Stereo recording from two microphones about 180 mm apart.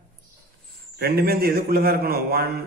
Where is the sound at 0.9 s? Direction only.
60° right (ahead or behind).